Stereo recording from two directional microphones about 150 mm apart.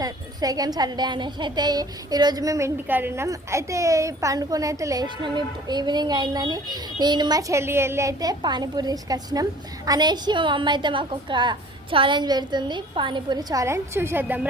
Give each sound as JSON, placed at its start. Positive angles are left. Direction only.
{"t": 0.0, "sound": "a woman's voice", "side_deg": -25}